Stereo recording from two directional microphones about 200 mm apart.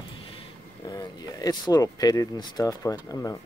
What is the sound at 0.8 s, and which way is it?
Speech, 20° left (ahead or behind).